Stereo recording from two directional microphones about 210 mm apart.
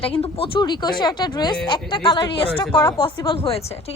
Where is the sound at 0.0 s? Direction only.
25° left (ahead or behind).